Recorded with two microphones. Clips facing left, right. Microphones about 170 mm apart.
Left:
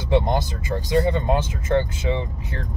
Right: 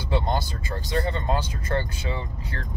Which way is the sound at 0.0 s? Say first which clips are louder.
Left 5 dB; 20° left (ahead or behind).